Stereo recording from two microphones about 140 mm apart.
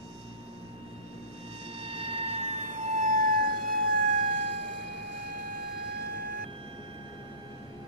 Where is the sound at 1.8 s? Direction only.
40° right (ahead or behind); by 4.0 s 90° right.